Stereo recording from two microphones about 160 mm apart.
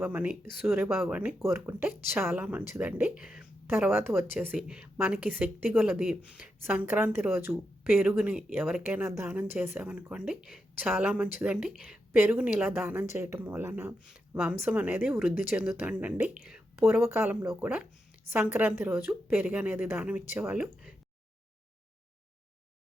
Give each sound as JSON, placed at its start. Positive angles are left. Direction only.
{"t": 0.0, "sound": "a woman's voice", "side_deg": -10}
{"t": 17.0, "sound": "a woman's voice", "side_deg": -15}